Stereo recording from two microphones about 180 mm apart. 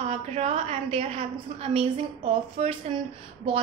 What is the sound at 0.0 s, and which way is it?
A woman's voice, 35° right (ahead or behind).